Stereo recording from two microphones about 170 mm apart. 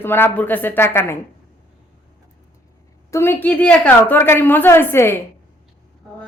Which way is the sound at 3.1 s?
15° left (ahead or behind).